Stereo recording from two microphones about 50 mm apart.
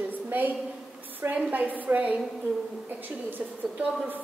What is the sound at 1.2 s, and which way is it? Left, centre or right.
Speech, right.